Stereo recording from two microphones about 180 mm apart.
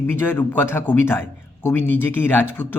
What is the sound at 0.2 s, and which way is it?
A man's voice, 10° left (ahead or behind).